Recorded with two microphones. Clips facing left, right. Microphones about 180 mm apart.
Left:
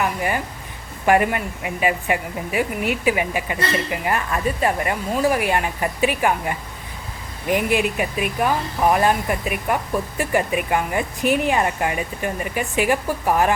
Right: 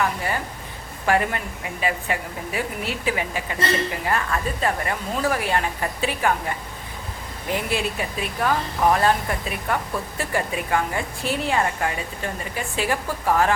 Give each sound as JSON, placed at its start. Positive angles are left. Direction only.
{"t": 1.0, "sound": "speech", "side_deg": 15}
{"t": 7.5, "sound": "speech", "side_deg": 15}